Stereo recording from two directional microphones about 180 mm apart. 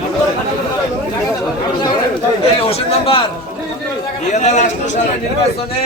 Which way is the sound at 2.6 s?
30° left (ahead or behind).